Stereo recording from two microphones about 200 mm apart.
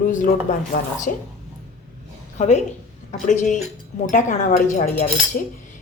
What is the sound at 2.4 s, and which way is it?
Speech, 35° left (ahead or behind).